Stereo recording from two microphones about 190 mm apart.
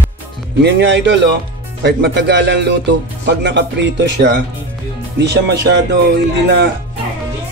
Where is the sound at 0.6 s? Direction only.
65° right (ahead or behind).